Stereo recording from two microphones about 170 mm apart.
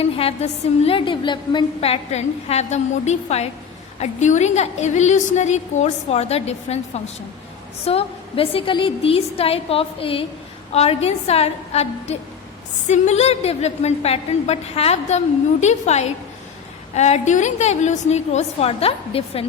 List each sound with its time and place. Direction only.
0.0 s a woman's voice: 35° left (ahead or behind)